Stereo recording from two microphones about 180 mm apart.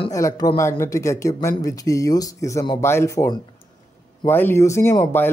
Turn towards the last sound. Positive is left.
turn(degrees=10)  # may be behind; listen again after turning